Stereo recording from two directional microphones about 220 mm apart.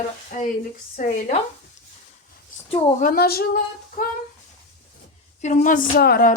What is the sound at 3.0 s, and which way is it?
Speech, 45° left (ahead or behind).